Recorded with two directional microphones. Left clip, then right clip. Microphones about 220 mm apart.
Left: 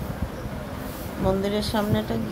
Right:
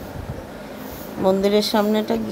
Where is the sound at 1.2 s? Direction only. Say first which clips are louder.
Right 7 dB; 30° right (ahead or behind).